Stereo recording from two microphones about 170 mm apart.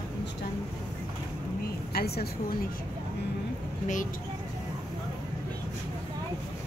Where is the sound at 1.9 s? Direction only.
65° left (ahead or behind).